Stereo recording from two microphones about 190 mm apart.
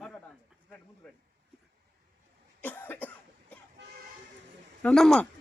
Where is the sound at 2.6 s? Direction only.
10° left (ahead or behind).